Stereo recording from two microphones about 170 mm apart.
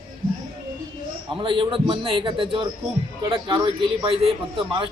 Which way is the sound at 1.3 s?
30° right (ahead or behind).